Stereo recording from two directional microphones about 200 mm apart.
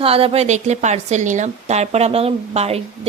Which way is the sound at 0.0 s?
30° right (ahead or behind).